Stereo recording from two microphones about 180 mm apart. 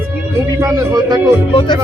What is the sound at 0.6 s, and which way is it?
Speech, 20° right (ahead or behind).